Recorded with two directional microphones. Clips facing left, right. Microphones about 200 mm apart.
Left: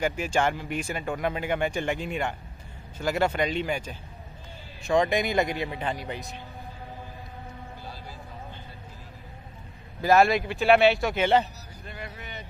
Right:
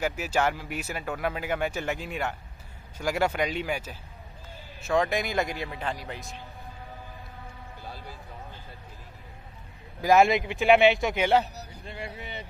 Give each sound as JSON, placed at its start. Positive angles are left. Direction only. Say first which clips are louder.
{"t": 0.0, "sound": "a man's voice", "louder": "left 1 dB", "side_deg": -5}
{"t": 10.0, "sound": "a man's voice", "louder": "even", "side_deg": -15}
{"t": 11.8, "sound": "speech", "louder": "right 1 dB", "side_deg": -25}